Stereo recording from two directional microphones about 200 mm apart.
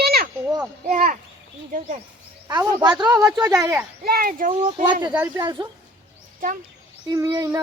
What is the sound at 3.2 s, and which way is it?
Child singing, 15° right (ahead or behind).